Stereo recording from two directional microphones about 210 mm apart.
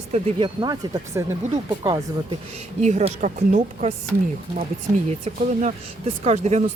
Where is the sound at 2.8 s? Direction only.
35° right (ahead or behind).